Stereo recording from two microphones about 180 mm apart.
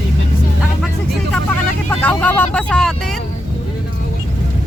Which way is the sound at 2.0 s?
5° left (ahead or behind).